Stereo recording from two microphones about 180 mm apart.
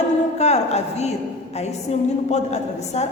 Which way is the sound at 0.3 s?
40° left (ahead or behind).